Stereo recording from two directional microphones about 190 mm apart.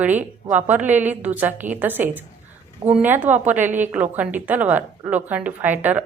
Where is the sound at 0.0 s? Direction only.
10° right (ahead or behind).